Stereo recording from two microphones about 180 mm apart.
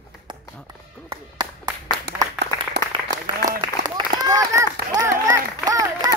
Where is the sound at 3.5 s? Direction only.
20° right (ahead or behind).